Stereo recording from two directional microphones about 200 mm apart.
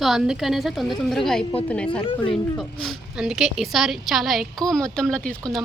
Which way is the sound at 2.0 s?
25° left (ahead or behind).